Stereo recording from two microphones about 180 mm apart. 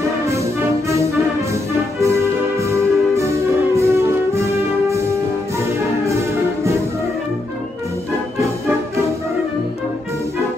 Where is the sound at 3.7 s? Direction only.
15° right (ahead or behind).